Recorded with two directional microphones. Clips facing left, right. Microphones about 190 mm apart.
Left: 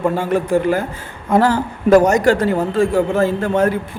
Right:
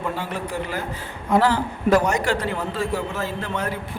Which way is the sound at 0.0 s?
50° left (ahead or behind).